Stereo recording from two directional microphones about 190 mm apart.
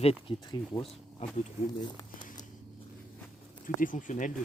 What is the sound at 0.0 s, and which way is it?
Speech, 30° left (ahead or behind).